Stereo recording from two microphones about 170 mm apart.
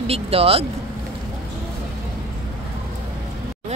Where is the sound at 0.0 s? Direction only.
35° right (ahead or behind).